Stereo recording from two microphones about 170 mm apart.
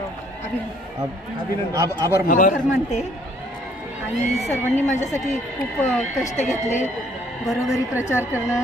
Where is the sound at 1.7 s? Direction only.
25° right (ahead or behind).